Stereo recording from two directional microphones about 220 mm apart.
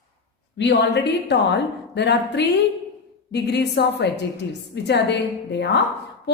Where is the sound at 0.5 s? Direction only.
50° left (ahead or behind).